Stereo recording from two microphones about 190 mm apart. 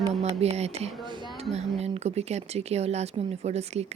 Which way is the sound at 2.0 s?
35° right (ahead or behind).